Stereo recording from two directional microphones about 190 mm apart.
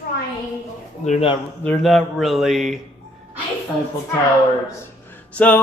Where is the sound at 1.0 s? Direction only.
35° left (ahead or behind).